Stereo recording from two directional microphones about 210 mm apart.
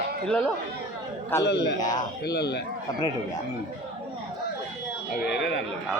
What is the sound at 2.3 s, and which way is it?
Speech, 50° left (ahead or behind).